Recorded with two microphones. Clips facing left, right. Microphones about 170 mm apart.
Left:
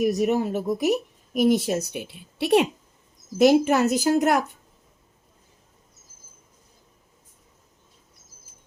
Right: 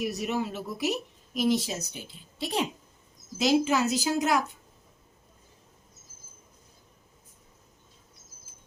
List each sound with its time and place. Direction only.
0.0 s a woman's voice: 45° left (ahead or behind); by 2.6 s 70° left (ahead or behind)
3.3 s a woman's voice: 55° left (ahead or behind)